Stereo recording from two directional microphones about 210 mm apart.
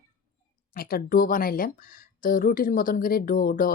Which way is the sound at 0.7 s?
45° left (ahead or behind).